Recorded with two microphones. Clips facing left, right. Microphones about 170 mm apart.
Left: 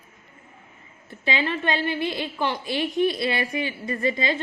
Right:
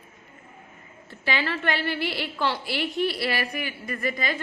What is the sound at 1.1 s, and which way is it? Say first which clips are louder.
A woman's voice: left 2 dB; 20° left (ahead or behind).